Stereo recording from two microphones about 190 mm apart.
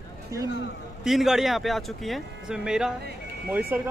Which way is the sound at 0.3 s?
15° right (ahead or behind).